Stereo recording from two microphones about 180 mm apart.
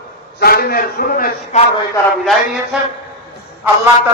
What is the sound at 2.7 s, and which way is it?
Speech, 5° right (ahead or behind).